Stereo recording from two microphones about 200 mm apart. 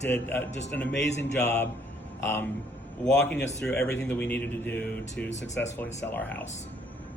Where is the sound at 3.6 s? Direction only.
5° left (ahead or behind).